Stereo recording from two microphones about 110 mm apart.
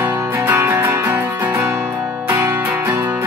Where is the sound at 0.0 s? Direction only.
25° right (ahead or behind).